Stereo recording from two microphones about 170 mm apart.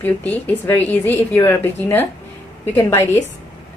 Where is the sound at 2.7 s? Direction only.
15° left (ahead or behind).